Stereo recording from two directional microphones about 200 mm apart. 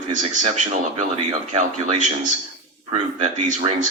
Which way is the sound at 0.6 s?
35° right (ahead or behind).